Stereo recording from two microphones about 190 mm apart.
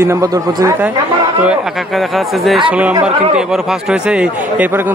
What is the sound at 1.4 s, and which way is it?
Speech, 5° right (ahead or behind).